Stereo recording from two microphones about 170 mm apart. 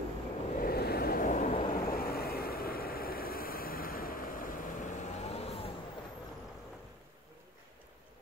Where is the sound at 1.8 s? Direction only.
60° left (ahead or behind); by 5.7 s 35° left (ahead or behind).